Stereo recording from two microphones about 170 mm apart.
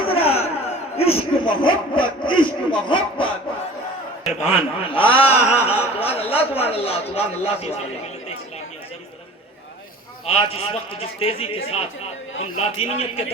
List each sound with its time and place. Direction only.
0.0 s a sound: 35° left (ahead or behind)
0.9 s speech: 35° left (ahead or behind)
4.3 s a man's voice: 40° left (ahead or behind)
10.2 s a man's voice: 35° left (ahead or behind)